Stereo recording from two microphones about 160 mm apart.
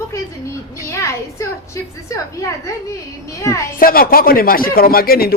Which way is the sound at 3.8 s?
65° left (ahead or behind).